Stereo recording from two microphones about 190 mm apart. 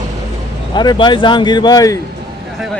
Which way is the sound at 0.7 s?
25° left (ahead or behind).